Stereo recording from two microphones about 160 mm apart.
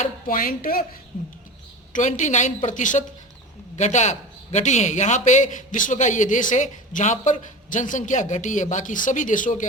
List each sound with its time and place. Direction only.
0.0 s speech: 60° left (ahead or behind)
1.9 s a man's voice: 50° left (ahead or behind)